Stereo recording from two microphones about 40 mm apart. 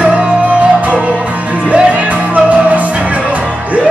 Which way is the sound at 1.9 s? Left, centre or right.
Right.